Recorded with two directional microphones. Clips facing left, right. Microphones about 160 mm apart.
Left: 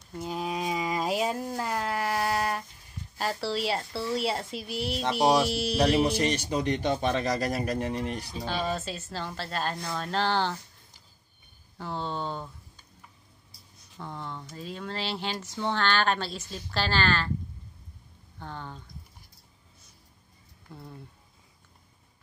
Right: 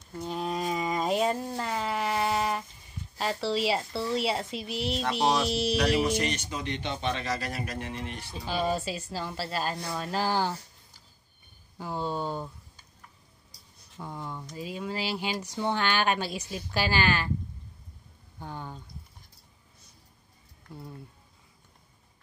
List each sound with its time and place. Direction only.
0.2 s a sound: 5° left (ahead or behind)
3.2 s a woman's voice: centre (ahead or behind)
5.8 s speech: 30° left (ahead or behind)
8.5 s a woman's voice: 10° right (ahead or behind)
11.8 s speech: 10° right (ahead or behind)
13.9 s a woman's voice: 10° right (ahead or behind)
18.4 s a woman's voice: 10° right (ahead or behind)